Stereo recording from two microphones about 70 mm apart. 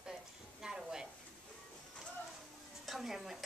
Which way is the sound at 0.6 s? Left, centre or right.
Centre.